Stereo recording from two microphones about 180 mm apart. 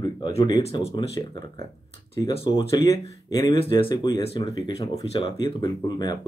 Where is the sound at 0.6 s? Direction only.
35° left (ahead or behind).